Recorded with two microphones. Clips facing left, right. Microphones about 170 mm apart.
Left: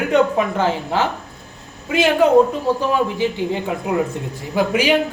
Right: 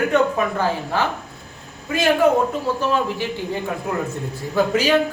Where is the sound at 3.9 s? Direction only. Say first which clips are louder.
Left 6 dB; 15° left (ahead or behind).